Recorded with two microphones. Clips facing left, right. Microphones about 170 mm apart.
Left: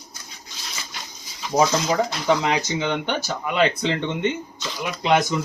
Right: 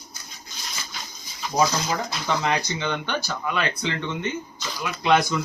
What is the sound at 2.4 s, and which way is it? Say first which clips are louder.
Speech: left 2 dB; 15° left (ahead or behind).